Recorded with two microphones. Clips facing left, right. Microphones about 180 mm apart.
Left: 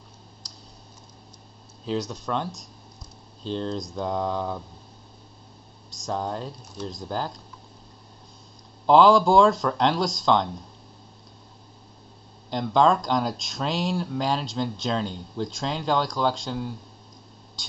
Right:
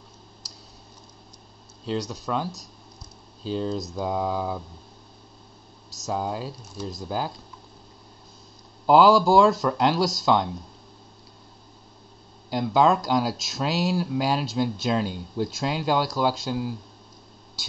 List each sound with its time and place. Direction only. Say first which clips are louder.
0.4 s clicking: even; 5° right (ahead or behind)
1.9 s speech: even; centre (ahead or behind)
5.9 s speech: right 1 dB; 5° right (ahead or behind)
8.8 s speech: even; 5° right (ahead or behind)
12.4 s speech: even; 5° right (ahead or behind)